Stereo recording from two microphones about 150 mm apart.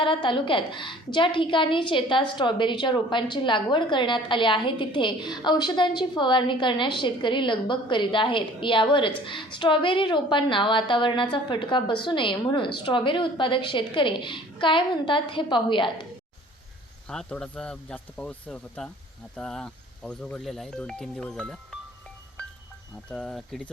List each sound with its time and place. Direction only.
0.0 s a woman's voice: 35° left (ahead or behind)
17.1 s speech: 5° left (ahead or behind)
23.0 s speech: 5° left (ahead or behind)